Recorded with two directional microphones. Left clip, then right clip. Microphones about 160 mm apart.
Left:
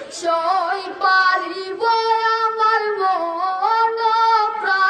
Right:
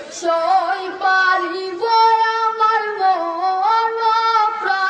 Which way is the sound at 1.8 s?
25° left (ahead or behind).